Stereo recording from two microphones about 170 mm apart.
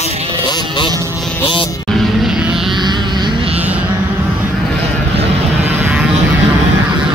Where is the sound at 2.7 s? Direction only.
25° right (ahead or behind).